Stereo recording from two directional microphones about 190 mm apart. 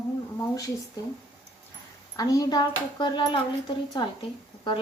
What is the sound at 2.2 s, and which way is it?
Speech, 20° left (ahead or behind).